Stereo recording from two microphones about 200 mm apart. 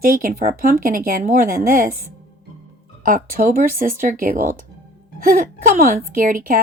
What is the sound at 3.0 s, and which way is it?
A woman's voice, 45° right (ahead or behind).